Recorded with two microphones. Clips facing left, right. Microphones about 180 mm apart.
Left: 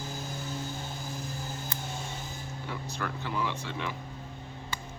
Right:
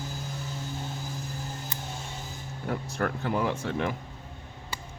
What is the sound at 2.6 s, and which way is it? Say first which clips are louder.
Speech: right 7 dB; 50° right (ahead or behind).